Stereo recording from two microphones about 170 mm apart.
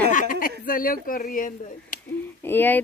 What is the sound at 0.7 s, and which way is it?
Speech, 55° left (ahead or behind).